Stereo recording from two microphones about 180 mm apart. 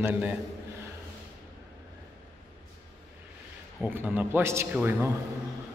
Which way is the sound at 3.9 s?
10° right (ahead or behind).